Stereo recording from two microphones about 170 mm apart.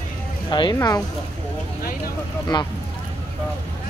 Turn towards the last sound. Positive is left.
turn(degrees=25)  # may be behind; listen again after turning